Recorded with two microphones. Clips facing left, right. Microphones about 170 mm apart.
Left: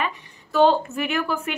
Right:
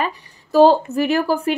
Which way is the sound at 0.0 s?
40° right (ahead or behind).